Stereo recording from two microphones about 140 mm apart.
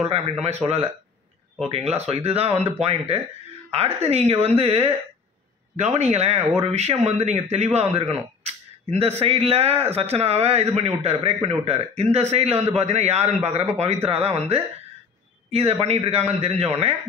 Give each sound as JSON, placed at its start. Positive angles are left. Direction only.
{"t": 0.1, "sound": "a man's voice", "side_deg": -50}